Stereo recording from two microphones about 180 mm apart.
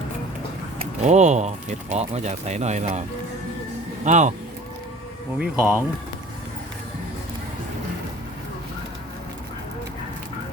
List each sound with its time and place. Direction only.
1.0 s speech: 40° right (ahead or behind)
4.0 s speech: 40° right (ahead or behind)
5.4 s speech: 10° right (ahead or behind)